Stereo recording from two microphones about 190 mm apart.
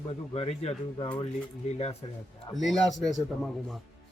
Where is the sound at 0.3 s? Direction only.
35° left (ahead or behind).